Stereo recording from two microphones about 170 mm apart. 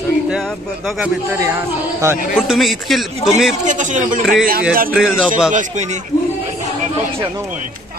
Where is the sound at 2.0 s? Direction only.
15° right (ahead or behind).